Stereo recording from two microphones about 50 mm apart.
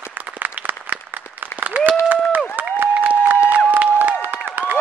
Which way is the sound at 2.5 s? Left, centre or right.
Right.